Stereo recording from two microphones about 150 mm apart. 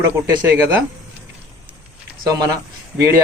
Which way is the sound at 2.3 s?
25° right (ahead or behind).